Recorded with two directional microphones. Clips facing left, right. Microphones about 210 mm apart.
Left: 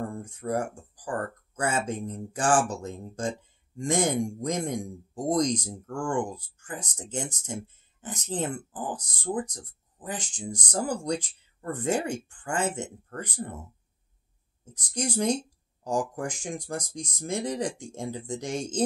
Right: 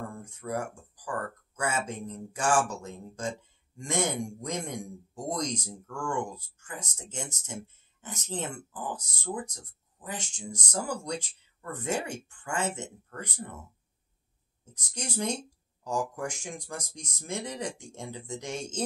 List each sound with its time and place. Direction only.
0.2 s speech: 30° left (ahead or behind)
15.0 s speech: 35° left (ahead or behind)